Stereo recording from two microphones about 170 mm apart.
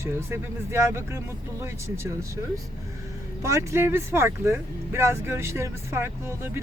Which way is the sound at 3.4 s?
15° right (ahead or behind).